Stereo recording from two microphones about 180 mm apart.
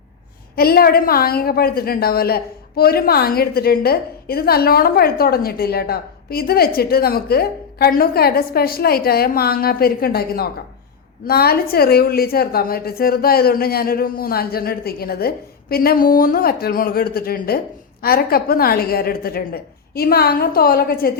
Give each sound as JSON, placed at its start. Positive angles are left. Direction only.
{"t": 0.5, "sound": "a woman's voice", "side_deg": 60}